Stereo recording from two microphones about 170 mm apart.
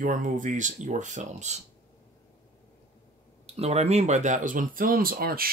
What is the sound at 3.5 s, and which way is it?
Speech, 40° right (ahead or behind).